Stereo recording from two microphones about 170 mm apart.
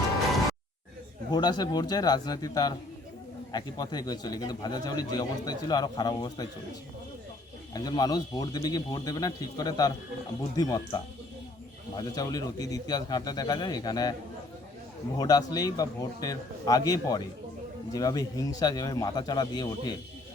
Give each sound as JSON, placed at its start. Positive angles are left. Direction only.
{"t": 1.3, "sound": "speech", "side_deg": 25}
{"t": 7.7, "sound": "speech", "side_deg": 25}
{"t": 15.2, "sound": "speech", "side_deg": 25}